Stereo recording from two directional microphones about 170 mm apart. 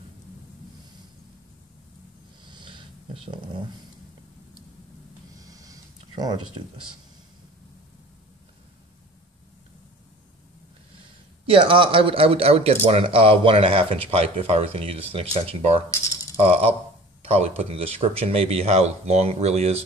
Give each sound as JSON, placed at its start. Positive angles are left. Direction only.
{"t": 2.4, "sound": "snort", "side_deg": -25}
{"t": 5.4, "sound": "a sound", "side_deg": -20}
{"t": 11.4, "sound": "speech", "side_deg": -30}